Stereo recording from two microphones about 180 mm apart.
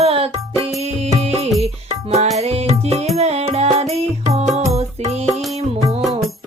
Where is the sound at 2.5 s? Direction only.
35° right (ahead or behind).